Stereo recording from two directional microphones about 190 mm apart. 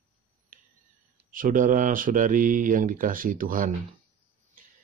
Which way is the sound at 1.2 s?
45° right (ahead or behind).